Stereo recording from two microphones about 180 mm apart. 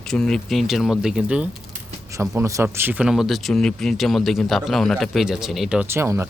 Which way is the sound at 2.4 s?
15° right (ahead or behind).